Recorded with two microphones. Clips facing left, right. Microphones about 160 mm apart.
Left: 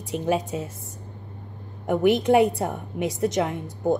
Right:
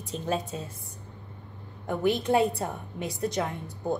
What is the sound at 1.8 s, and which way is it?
A woman's voice, 20° left (ahead or behind).